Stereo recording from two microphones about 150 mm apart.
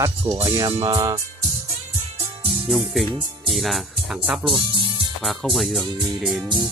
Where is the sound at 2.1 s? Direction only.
40° right (ahead or behind).